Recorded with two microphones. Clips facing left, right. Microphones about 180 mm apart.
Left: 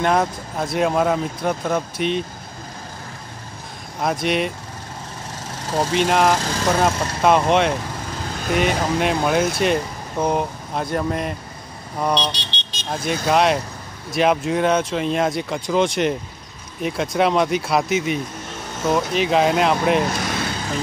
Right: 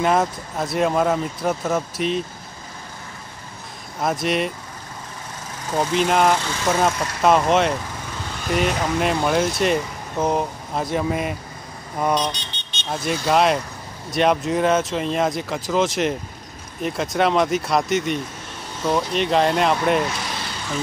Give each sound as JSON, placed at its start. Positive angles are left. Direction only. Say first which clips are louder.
{"t": 0.0, "sound": "speech", "louder": "even", "side_deg": 0}
{"t": 4.0, "sound": "speech", "louder": "left 1 dB", "side_deg": 0}
{"t": 5.8, "sound": "speech", "louder": "left 1 dB", "side_deg": 0}
{"t": 12.0, "sound": "vehicle", "louder": "even", "side_deg": -10}
{"t": 12.4, "sound": "vehicle", "louder": "left 3 dB", "side_deg": 90}
{"t": 12.9, "sound": "speech", "louder": "even", "side_deg": 0}
{"t": 20.1, "sound": "vehicle", "louder": "left 5 dB", "side_deg": 50}